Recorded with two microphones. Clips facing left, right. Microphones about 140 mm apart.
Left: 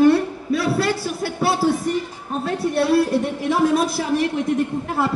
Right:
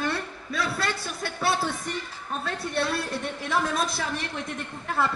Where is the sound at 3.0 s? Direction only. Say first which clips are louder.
Left 10 dB; 15° left (ahead or behind).